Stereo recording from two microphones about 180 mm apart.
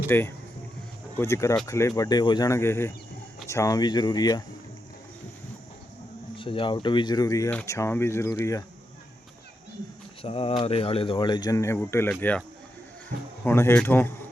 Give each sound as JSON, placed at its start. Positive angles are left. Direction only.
{"t": 0.1, "sound": "speech", "side_deg": 10}
{"t": 6.3, "sound": "speech", "side_deg": 30}
{"t": 10.2, "sound": "speech", "side_deg": 30}
{"t": 13.4, "sound": "speech", "side_deg": 15}